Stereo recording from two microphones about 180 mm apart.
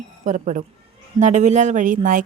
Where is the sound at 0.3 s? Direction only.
40° right (ahead or behind).